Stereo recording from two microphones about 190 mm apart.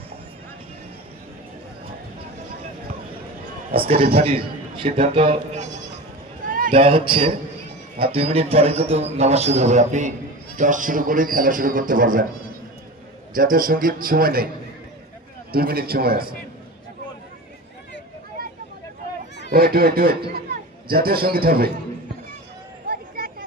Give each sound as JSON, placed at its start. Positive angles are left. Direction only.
{"t": 3.7, "sound": "a man's voice", "side_deg": -30}
{"t": 5.6, "sound": "bleat", "side_deg": 65}
{"t": 6.4, "sound": "a sound", "side_deg": -45}
{"t": 6.7, "sound": "a man's voice", "side_deg": -30}
{"t": 13.3, "sound": "speech", "side_deg": -45}
{"t": 15.5, "sound": "speech", "side_deg": -55}
{"t": 19.5, "sound": "speech", "side_deg": -50}
{"t": 22.9, "sound": "a sound", "side_deg": -50}